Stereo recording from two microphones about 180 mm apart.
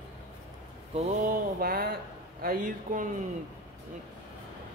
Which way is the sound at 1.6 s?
55° right (ahead or behind).